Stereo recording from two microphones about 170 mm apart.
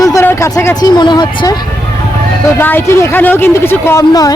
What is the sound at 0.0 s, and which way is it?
Speech, 20° left (ahead or behind).